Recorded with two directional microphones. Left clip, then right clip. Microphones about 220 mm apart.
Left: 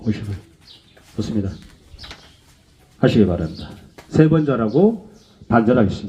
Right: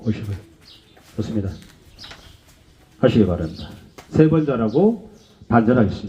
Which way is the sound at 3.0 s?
45° left (ahead or behind).